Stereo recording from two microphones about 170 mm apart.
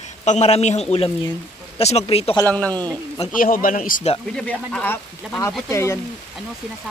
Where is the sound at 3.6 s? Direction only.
55° left (ahead or behind).